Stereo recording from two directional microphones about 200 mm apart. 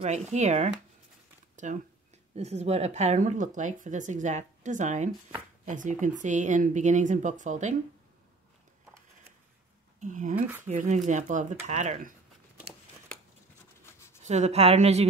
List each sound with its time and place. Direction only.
0.0 s speech: 35° right (ahead or behind)
9.9 s speech: 40° right (ahead or behind)
14.2 s speech: 35° right (ahead or behind)